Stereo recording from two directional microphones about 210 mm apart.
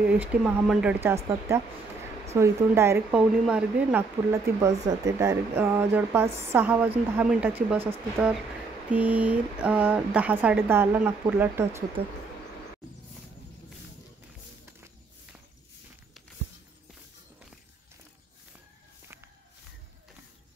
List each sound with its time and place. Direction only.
0.0 s speech: 5° right (ahead or behind)
8.9 s speech: 5° right (ahead or behind)